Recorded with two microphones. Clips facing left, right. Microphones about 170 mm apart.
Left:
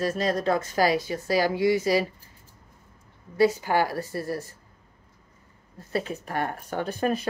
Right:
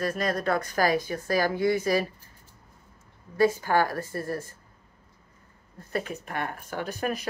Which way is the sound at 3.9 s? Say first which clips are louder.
Left 1 dB; 50° right (ahead or behind).